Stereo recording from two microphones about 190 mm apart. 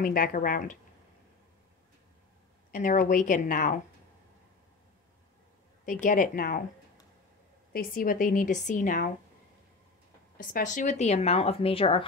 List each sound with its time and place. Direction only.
0.0 s a woman's voice: 45° left (ahead or behind)
2.7 s a woman's voice: 45° left (ahead or behind)
5.9 s a woman's voice: 45° left (ahead or behind)
7.7 s a woman's voice: 50° left (ahead or behind)
10.3 s speech: 45° left (ahead or behind); by 12.1 s 30° left (ahead or behind)